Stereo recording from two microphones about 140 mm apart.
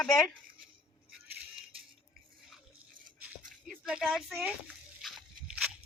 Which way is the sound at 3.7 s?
5° right (ahead or behind).